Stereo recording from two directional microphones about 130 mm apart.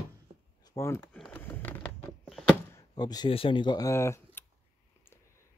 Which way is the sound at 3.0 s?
30° left (ahead or behind).